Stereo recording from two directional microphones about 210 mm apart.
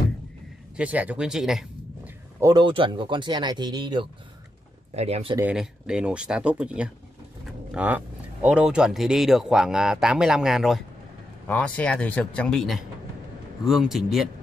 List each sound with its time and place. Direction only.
0.7 s speech: 5° right (ahead or behind)
2.4 s speech: 20° right (ahead or behind)
5.4 s speech: 5° right (ahead or behind)